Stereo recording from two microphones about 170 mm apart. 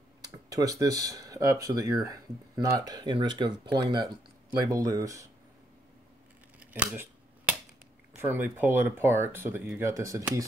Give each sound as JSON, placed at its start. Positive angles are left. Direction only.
{"t": 0.2, "sound": "speech", "side_deg": -20}
{"t": 6.6, "sound": "scissors", "side_deg": -10}
{"t": 8.1, "sound": "speech", "side_deg": -10}